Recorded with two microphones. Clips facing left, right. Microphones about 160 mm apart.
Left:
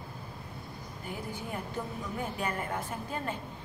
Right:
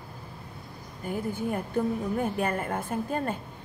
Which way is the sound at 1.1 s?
50° right (ahead or behind).